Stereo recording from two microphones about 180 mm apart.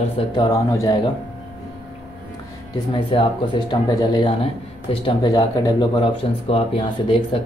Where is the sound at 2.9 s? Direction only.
30° left (ahead or behind).